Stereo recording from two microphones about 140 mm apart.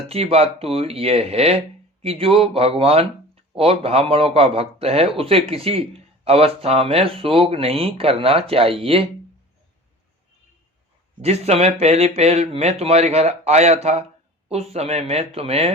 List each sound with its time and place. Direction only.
0.1 s speech: 45° right (ahead or behind)
11.2 s speech: 50° right (ahead or behind)